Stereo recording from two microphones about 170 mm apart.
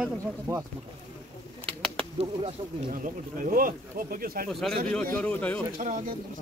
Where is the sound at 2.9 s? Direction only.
50° right (ahead or behind).